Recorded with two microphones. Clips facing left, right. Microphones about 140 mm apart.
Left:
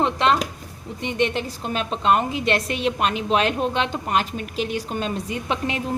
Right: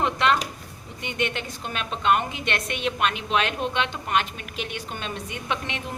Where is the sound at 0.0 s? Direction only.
30° left (ahead or behind).